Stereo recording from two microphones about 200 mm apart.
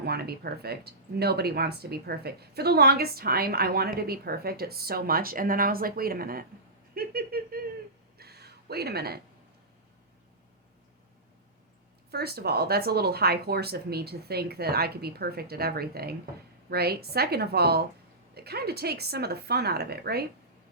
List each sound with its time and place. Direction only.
0.0 s speech: 55° right (ahead or behind)
6.9 s a sound: 50° right (ahead or behind)
12.1 s speech: 50° right (ahead or behind)